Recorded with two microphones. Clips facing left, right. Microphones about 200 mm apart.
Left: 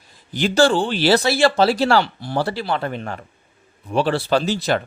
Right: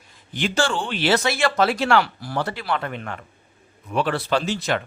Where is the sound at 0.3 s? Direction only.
35° left (ahead or behind).